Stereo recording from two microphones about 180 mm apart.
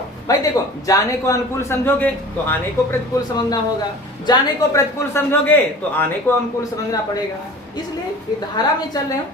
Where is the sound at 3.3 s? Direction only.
25° left (ahead or behind).